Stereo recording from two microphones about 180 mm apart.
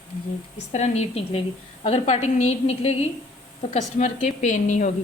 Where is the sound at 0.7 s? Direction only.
35° left (ahead or behind).